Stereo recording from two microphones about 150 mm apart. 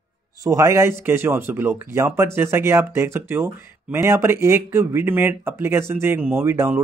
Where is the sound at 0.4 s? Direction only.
20° right (ahead or behind).